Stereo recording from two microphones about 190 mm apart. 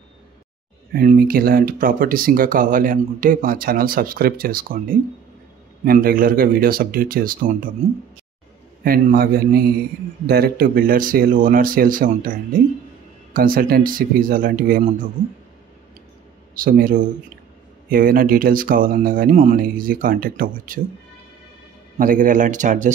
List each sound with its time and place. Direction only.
0.9 s speech: 50° right (ahead or behind)
8.8 s speech: 50° right (ahead or behind)
16.5 s speech: 45° right (ahead or behind)
21.9 s speech: 45° right (ahead or behind)